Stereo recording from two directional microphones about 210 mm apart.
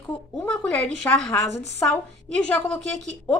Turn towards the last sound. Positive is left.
turn(degrees=5)  # may be behind; listen again after turning